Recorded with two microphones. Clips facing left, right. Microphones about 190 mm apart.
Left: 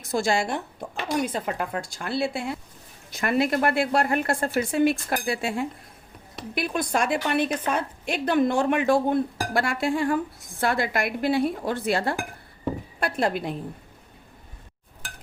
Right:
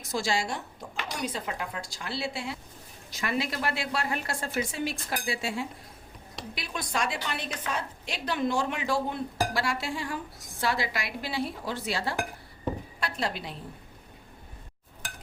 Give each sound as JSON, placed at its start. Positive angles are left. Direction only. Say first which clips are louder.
{"t": 0.1, "sound": "a woman's voice", "louder": "left 5 dB", "side_deg": 55}